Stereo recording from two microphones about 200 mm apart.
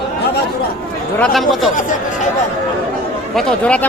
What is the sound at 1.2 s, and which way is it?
Speech, centre (ahead or behind).